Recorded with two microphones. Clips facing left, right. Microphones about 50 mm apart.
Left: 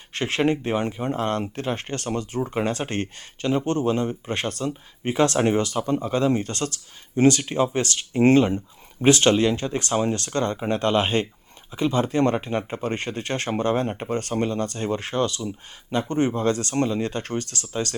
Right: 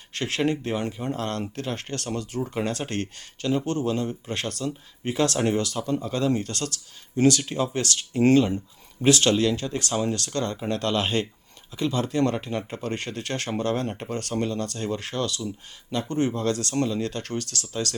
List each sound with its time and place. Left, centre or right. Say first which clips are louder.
0.1 s speech: left 3 dB; left